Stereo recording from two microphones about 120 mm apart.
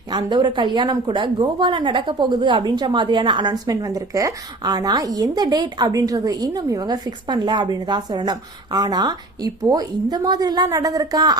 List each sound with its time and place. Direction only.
0.1 s speech: 40° right (ahead or behind)